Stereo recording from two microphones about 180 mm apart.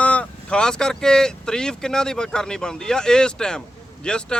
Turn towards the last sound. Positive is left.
turn(degrees=5)  # may be behind; listen again after turning